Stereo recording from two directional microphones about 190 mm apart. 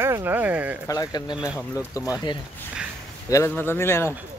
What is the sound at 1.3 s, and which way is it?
Speech, 5° right (ahead or behind).